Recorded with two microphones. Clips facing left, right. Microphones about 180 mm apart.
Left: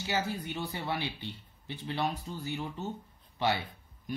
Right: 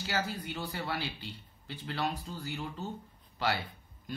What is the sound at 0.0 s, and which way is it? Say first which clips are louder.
Speech: left 2 dB; 20° left (ahead or behind).